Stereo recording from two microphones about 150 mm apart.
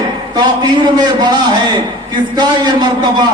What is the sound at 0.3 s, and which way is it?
A man's voice, 30° right (ahead or behind).